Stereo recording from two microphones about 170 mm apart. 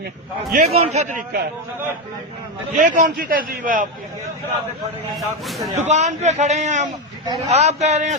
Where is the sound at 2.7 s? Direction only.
50° right (ahead or behind).